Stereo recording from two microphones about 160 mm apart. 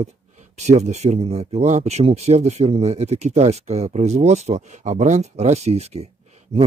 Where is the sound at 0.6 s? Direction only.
45° right (ahead or behind).